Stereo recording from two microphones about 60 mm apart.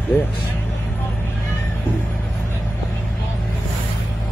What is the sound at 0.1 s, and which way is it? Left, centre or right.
Speech, left.